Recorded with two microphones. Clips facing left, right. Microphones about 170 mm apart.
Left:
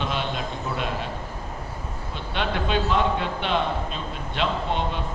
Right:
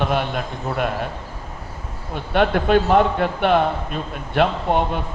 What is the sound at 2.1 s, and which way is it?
A man's voice, 55° right (ahead or behind).